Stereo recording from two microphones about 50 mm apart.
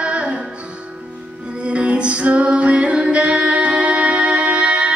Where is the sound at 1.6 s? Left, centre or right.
Right.